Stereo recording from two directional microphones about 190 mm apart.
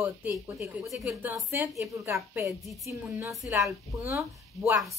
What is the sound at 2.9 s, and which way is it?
Speech, 15° right (ahead or behind).